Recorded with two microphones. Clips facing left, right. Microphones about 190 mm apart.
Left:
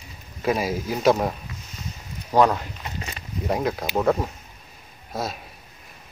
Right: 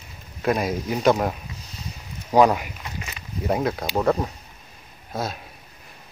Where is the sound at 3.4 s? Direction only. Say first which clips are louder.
Right 1 dB; centre (ahead or behind).